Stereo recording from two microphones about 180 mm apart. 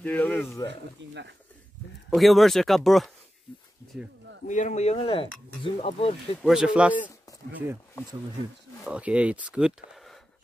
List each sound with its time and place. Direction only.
0.0 s speech: 10° left (ahead or behind)
0.7 s speech: 75° right (ahead or behind)
2.0 s speech: centre (ahead or behind)
4.5 s speech: 40° left (ahead or behind)
6.4 s speech: 5° right (ahead or behind)
8.8 s speech: 5° right (ahead or behind)